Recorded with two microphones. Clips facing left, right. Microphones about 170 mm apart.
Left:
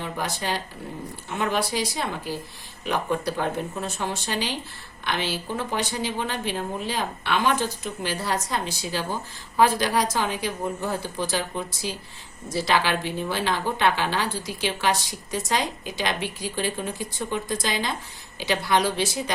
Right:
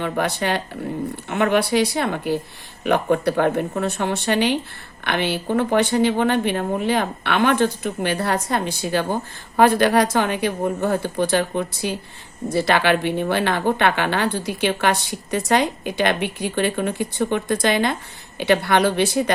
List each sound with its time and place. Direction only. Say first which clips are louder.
0.0 s a woman's voice: right 7 dB; 65° right (ahead or behind)